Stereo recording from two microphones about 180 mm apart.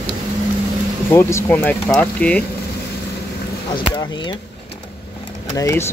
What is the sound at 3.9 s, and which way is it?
Speech, 25° left (ahead or behind).